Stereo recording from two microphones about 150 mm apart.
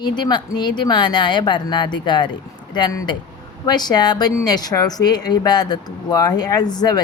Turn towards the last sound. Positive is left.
turn(degrees=25)  # may be behind; listen again after turning